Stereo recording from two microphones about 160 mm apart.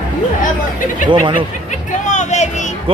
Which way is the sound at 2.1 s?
45° left (ahead or behind).